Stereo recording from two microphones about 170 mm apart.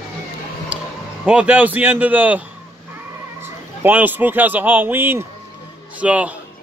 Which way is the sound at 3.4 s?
10° right (ahead or behind).